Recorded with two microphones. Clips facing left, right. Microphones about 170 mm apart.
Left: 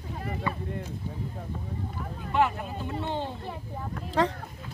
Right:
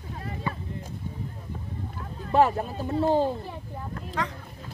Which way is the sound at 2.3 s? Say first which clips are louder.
Right 5 dB; 40° right (ahead or behind).